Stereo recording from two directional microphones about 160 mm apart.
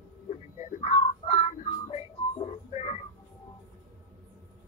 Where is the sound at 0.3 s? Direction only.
50° left (ahead or behind).